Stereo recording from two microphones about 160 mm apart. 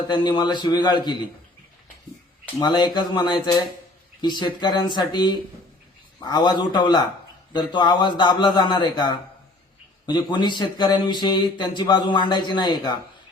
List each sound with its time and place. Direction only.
0.1 s speech: 25° left (ahead or behind)
2.6 s speech: 25° left (ahead or behind)